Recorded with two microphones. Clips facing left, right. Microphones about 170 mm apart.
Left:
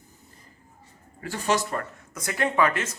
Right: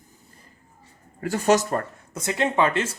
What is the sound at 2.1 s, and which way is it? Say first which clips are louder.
Speech: right 3 dB; 25° right (ahead or behind).